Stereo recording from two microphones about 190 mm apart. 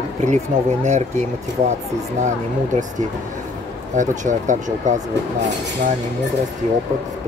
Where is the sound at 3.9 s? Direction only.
40° right (ahead or behind).